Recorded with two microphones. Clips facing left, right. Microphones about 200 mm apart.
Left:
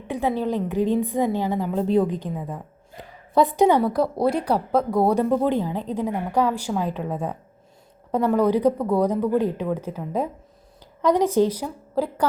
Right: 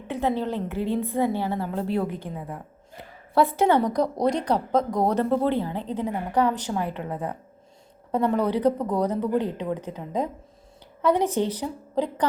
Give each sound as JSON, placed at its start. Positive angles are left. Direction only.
{"t": 0.1, "sound": "a woman's voice", "side_deg": 10}
{"t": 3.3, "sound": "a woman's voice", "side_deg": 15}